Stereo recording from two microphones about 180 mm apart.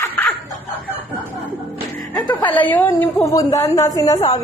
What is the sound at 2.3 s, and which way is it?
A woman's voice, 10° left (ahead or behind).